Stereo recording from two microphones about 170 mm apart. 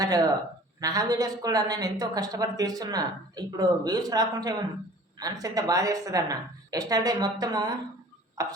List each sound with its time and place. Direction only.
0.0 s a woman's voice: 20° right (ahead or behind)